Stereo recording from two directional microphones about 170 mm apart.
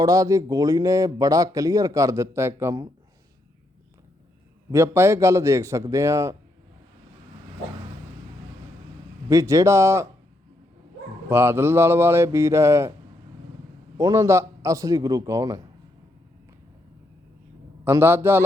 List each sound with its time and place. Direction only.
0.0 s speech: 20° right (ahead or behind)
4.7 s speech: 15° right (ahead or behind)
9.3 s speech: 20° right (ahead or behind)
11.3 s speech: 15° right (ahead or behind)
14.0 s speech: 20° right (ahead or behind)
17.8 s speech: 15° right (ahead or behind)